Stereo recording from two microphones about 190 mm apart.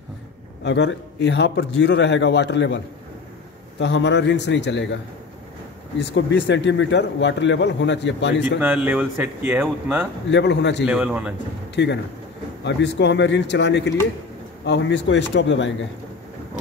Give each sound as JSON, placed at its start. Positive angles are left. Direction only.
{"t": 0.7, "sound": "speech", "side_deg": 65}
{"t": 3.8, "sound": "speech", "side_deg": 65}
{"t": 5.9, "sound": "speech", "side_deg": 65}
{"t": 8.5, "sound": "speech", "side_deg": -10}
{"t": 10.3, "sound": "a man's voice", "side_deg": 65}
{"t": 10.9, "sound": "speech", "side_deg": -5}
{"t": 11.7, "sound": "a man's voice", "side_deg": 65}